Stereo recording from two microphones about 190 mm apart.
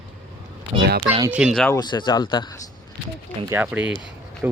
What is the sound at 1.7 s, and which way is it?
Speech, 20° left (ahead or behind).